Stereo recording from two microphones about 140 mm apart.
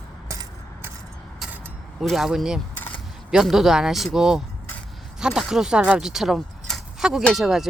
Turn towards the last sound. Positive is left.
turn(degrees=-5)  # may be behind; listen again after turning